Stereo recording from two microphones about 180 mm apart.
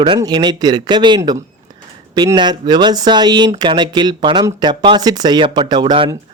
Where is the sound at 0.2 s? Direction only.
20° right (ahead or behind).